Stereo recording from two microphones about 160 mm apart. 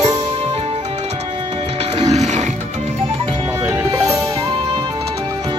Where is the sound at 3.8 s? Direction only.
20° right (ahead or behind).